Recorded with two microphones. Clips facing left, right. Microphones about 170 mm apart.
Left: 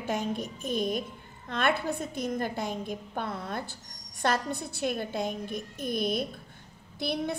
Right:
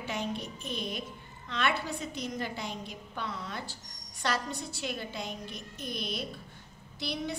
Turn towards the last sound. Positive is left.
turn(degrees=55)  # may be behind; listen again after turning